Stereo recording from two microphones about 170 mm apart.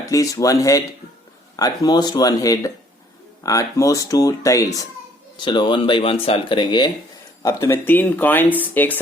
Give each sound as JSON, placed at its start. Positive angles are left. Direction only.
{"t": 0.0, "sound": "speech", "side_deg": 20}
{"t": 7.4, "sound": "speech", "side_deg": 15}